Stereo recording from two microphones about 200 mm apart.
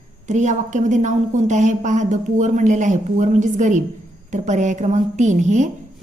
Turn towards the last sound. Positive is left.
turn(degrees=-35)  # may be behind; listen again after turning